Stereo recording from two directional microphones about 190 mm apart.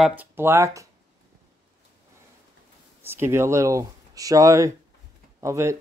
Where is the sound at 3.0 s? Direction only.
10° right (ahead or behind).